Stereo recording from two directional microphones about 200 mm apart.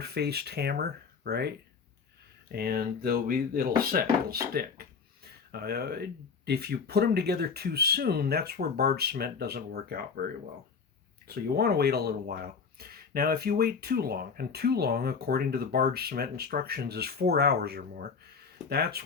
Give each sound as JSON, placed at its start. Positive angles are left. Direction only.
{"t": 0.0, "sound": "speech", "side_deg": -55}
{"t": 11.3, "sound": "speech", "side_deg": -50}